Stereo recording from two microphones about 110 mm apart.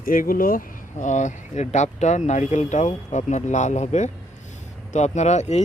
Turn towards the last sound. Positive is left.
turn(degrees=90)